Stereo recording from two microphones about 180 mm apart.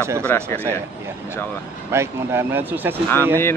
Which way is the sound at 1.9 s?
15° right (ahead or behind).